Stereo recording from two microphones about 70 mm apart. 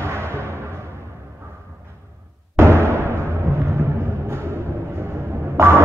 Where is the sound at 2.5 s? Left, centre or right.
Right.